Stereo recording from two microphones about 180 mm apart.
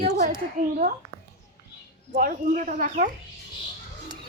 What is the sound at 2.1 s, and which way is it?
Speech, 45° right (ahead or behind).